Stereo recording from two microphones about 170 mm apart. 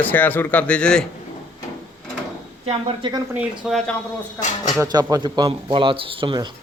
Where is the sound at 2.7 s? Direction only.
30° right (ahead or behind).